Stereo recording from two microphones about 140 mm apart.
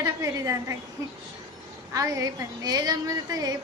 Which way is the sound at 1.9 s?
25° right (ahead or behind).